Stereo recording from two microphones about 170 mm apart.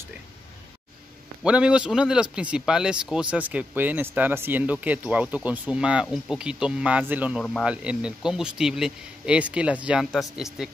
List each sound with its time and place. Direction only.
1.4 s speech: 5° right (ahead or behind)